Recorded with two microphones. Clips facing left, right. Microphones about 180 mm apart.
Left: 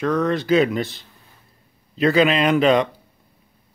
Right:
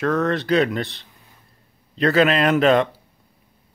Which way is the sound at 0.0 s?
Centre (ahead or behind).